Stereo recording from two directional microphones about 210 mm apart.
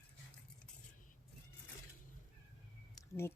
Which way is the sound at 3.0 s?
10° left (ahead or behind).